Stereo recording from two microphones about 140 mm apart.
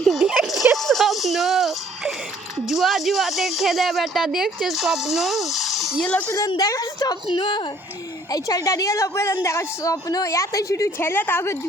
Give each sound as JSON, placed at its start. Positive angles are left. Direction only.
{"t": 0.0, "sound": "a sound", "side_deg": 0}
{"t": 2.6, "sound": "speech", "side_deg": 0}
{"t": 6.7, "sound": "a woman's voice", "side_deg": 25}